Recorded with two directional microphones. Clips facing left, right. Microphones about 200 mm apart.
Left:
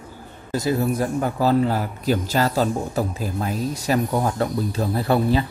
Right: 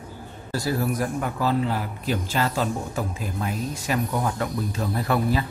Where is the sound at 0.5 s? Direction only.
20° left (ahead or behind).